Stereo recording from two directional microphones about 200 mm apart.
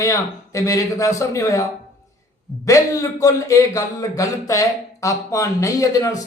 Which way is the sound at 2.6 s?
15° left (ahead or behind).